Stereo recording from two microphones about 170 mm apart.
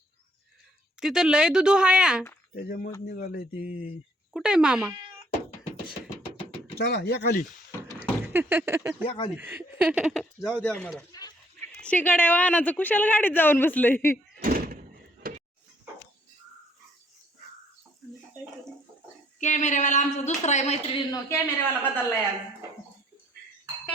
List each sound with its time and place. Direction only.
0.9 s speech: 5° right (ahead or behind)
2.6 s speech: 55° left (ahead or behind)
4.3 s speech: 5° right (ahead or behind)
6.7 s speech: 75° left (ahead or behind)
8.3 s speech: 15° right (ahead or behind)
9.0 s speech: 30° left (ahead or behind)
9.3 s a woman's voice: 10° right (ahead or behind); by 11.0 s 5° left (ahead or behind)
11.1 s a sound: 20° left (ahead or behind)
11.9 s a woman's voice: 10° left (ahead or behind)
14.4 s door: 55° right (ahead or behind)
15.2 s a sound: 55° right (ahead or behind)
19.4 s speech: 45° left (ahead or behind)
21.1 s a woman's voice: 15° left (ahead or behind)